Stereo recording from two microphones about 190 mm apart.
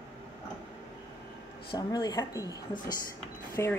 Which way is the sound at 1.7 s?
20° left (ahead or behind).